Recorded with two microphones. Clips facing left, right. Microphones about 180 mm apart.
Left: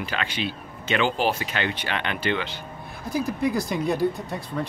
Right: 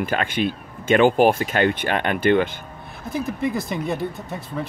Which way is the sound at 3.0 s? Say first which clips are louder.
Even; centre (ahead or behind).